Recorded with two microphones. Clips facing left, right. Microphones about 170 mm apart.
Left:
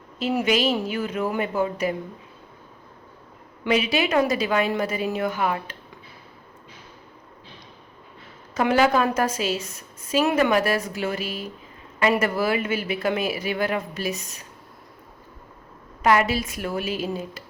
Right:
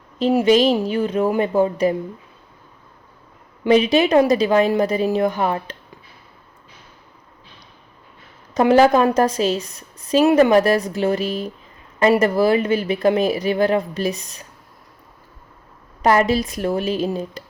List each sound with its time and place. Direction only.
0.3 s speech: 35° right (ahead or behind)
3.7 s speech: 35° right (ahead or behind)
8.5 s speech: 40° right (ahead or behind)
16.0 s speech: 40° right (ahead or behind)